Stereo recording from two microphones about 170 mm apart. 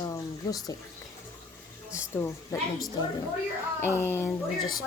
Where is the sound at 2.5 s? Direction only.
15° left (ahead or behind).